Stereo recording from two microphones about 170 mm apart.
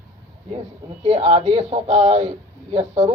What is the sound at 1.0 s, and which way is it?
Speech, 45° right (ahead or behind).